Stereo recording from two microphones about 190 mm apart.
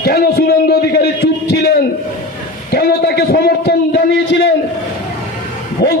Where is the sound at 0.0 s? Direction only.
55° left (ahead or behind).